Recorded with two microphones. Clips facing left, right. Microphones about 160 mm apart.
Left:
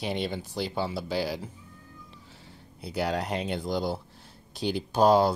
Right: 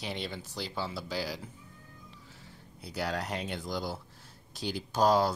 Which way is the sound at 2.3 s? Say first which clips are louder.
Left 2 dB; 25° left (ahead or behind).